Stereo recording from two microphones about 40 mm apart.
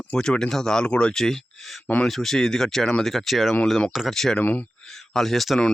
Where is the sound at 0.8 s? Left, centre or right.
Left.